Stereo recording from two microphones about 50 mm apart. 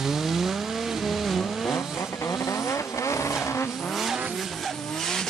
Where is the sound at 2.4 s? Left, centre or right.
Left.